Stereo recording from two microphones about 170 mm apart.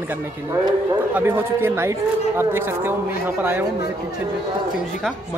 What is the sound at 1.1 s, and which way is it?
Speech, 10° right (ahead or behind).